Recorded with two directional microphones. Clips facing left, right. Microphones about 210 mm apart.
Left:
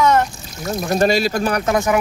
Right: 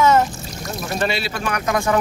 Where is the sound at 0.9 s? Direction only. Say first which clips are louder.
Left 7 dB; 40° left (ahead or behind).